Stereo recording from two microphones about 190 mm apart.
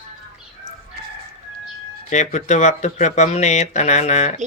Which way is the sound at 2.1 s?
40° left (ahead or behind).